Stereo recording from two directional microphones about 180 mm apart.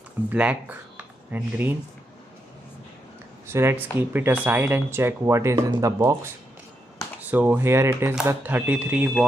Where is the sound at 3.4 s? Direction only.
15° right (ahead or behind).